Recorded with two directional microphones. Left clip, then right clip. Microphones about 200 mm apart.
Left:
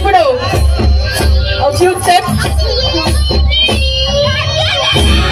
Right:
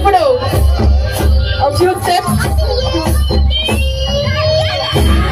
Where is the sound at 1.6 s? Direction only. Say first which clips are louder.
Left 1 dB; 35° right (ahead or behind).